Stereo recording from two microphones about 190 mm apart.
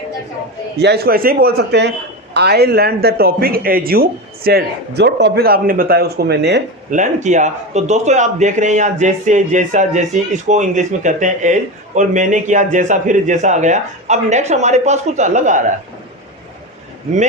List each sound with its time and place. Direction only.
0.8 s a man's voice: 60° right (ahead or behind)
6.9 s a man's voice: 40° right (ahead or behind)